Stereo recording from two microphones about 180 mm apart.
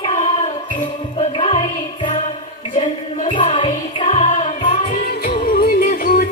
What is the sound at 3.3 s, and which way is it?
Music, 30° left (ahead or behind).